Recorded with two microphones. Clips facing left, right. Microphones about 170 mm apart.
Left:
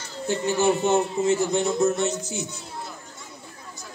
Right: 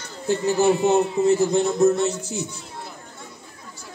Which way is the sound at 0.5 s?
35° right (ahead or behind).